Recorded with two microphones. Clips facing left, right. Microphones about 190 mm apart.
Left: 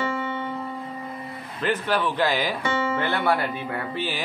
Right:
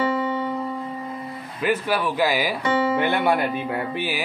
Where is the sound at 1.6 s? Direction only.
10° right (ahead or behind).